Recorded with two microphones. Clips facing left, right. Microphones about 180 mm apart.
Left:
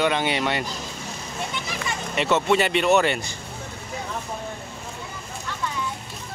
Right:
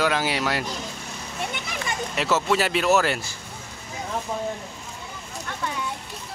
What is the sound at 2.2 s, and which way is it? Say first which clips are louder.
Speech: left 2 dB; centre (ahead or behind).